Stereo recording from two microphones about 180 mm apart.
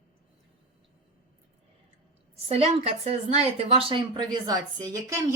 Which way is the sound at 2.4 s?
35° right (ahead or behind).